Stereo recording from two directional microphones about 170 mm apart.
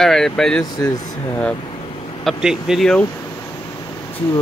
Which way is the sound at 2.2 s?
5° right (ahead or behind).